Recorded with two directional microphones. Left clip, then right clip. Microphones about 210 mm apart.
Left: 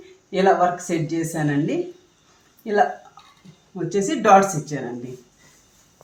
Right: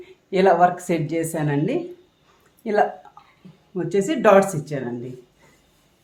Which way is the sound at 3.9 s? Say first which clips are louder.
Left 1 dB; 55° right (ahead or behind).